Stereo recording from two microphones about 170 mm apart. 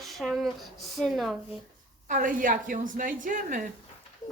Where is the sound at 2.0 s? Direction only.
55° right (ahead or behind).